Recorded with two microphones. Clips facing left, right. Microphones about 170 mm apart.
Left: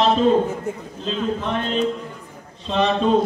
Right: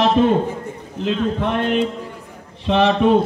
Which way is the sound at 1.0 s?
65° right (ahead or behind).